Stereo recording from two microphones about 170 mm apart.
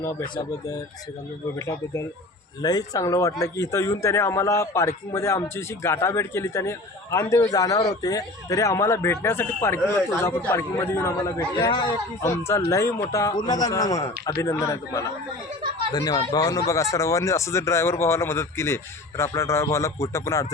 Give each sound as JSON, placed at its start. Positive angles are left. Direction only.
{"t": 0.0, "sound": "speech", "side_deg": 15}